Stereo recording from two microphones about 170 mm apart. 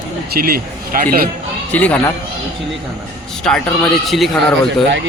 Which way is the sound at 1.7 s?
10° left (ahead or behind).